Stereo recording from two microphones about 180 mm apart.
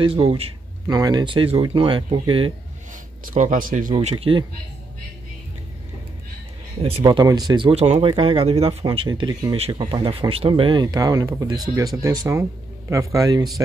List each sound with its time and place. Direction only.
0.0 s speech: 30° right (ahead or behind)
3.3 s speech: 45° right (ahead or behind)
3.9 s speech: 35° right (ahead or behind)
7.0 s speech: 20° right (ahead or behind)